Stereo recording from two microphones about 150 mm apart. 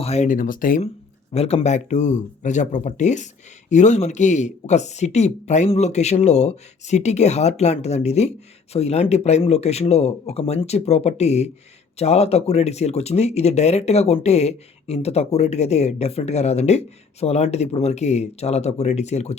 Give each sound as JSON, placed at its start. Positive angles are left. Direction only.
{"t": 0.0, "sound": "speech", "side_deg": 50}
{"t": 1.3, "sound": "speech", "side_deg": 45}